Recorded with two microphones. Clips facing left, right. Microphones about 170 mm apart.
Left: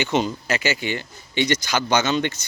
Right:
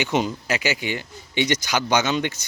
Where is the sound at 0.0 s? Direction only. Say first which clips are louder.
Left 1 dB; 10° right (ahead or behind).